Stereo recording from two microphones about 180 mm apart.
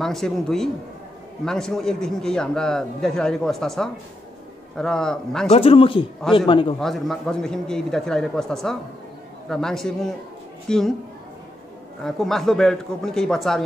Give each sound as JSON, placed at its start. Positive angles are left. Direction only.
{"t": 0.0, "sound": "a man's voice", "side_deg": 0}
{"t": 5.5, "sound": "speech", "side_deg": 30}
{"t": 6.8, "sound": "a man's voice", "side_deg": 0}
{"t": 12.0, "sound": "a man's voice", "side_deg": 0}